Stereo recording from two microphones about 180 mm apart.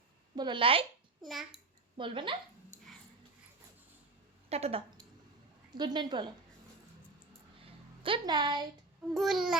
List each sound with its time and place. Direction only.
0.3 s speech: 25° right (ahead or behind)
1.2 s speech: centre (ahead or behind)
2.0 s speech: 25° right (ahead or behind)
4.4 s speech: 35° right (ahead or behind)
5.7 s speech: 25° right (ahead or behind)
7.6 s a sound: 30° right (ahead or behind)
9.1 s speech: centre (ahead or behind)